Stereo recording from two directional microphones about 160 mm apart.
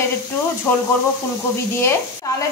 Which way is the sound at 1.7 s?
15° left (ahead or behind).